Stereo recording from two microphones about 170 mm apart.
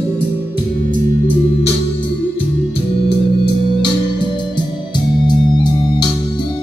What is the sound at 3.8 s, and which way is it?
Music, 25° left (ahead or behind).